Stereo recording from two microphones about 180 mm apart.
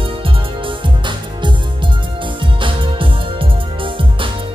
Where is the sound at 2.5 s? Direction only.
30° right (ahead or behind).